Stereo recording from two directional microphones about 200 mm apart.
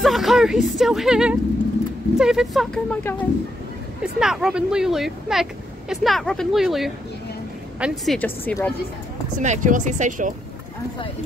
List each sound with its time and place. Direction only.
0.0 s speech: centre (ahead or behind)
4.0 s speech: 5° right (ahead or behind)
9.4 s speech: 40° right (ahead or behind)